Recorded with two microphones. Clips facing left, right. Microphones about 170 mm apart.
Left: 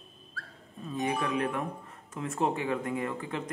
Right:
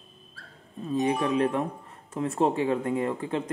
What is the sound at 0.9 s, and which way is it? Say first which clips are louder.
A man's voice: right 6 dB; 25° right (ahead or behind).